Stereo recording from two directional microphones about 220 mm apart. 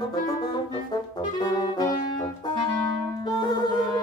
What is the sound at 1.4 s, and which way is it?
Brass instrument, 20° left (ahead or behind).